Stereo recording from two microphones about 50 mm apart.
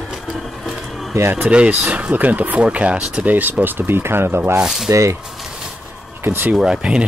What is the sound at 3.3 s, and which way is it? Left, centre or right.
Speech, right.